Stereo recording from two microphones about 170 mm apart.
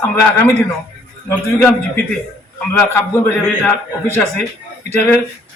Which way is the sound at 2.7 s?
10° left (ahead or behind).